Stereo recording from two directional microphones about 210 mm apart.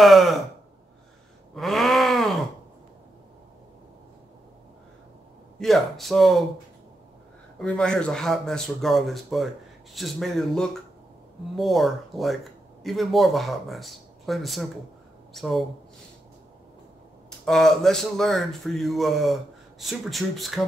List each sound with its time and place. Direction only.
0.0 s speech: centre (ahead or behind)
1.5 s groan: centre (ahead or behind)
5.6 s speech: centre (ahead or behind)
7.5 s speech: 5° left (ahead or behind)
17.5 s speech: centre (ahead or behind)